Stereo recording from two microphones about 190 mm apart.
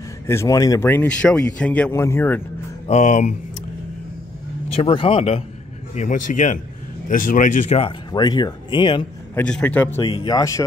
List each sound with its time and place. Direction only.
0.3 s speech: 15° left (ahead or behind)
2.9 s speech: 40° left (ahead or behind)
4.7 s speech: 30° left (ahead or behind)
5.9 s speech: 40° left (ahead or behind)
8.1 s speech: 20° left (ahead or behind)
9.3 s speech: 5° left (ahead or behind)